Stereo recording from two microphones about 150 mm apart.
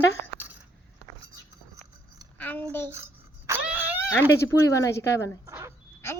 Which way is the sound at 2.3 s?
10° left (ahead or behind).